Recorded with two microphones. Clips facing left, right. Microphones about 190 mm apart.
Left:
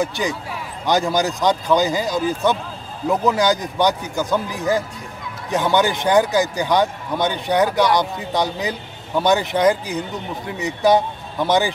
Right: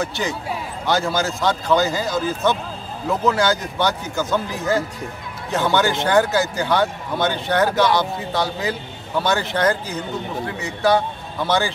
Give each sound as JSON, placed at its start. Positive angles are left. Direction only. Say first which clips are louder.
{"t": 0.0, "sound": "a man's voice", "louder": "left 2 dB", "side_deg": 15}